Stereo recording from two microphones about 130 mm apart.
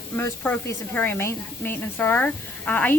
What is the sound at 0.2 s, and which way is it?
Speech, 15° left (ahead or behind).